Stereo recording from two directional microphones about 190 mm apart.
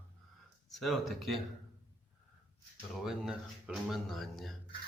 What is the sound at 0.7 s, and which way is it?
Speech, centre (ahead or behind).